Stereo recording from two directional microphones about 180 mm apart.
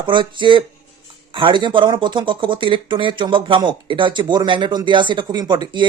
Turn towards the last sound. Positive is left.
turn(degrees=-25)  # may be behind; listen again after turning